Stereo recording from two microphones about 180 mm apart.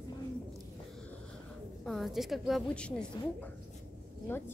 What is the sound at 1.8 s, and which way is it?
A woman's voice, centre (ahead or behind).